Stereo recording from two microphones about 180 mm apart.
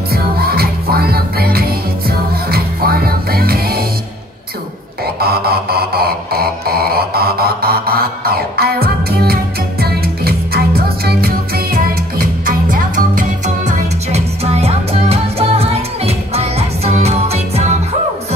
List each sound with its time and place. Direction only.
0.1 s music: 60° right (ahead or behind)
5.0 s a sound: 60° right (ahead or behind)
11.1 s music: 55° right (ahead or behind)
13.7 s music: 35° right (ahead or behind)